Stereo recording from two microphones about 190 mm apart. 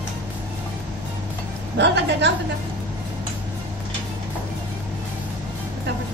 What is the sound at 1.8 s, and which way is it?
Speech, 65° right (ahead or behind).